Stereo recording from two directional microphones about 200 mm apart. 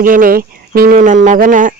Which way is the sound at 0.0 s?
45° right (ahead or behind).